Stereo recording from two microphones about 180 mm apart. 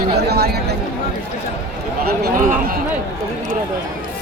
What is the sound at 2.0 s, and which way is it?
Speech, 55° right (ahead or behind).